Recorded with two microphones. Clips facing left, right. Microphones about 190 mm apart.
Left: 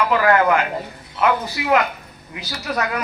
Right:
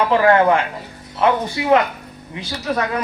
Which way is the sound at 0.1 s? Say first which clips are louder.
Right 3 dB; 30° right (ahead or behind).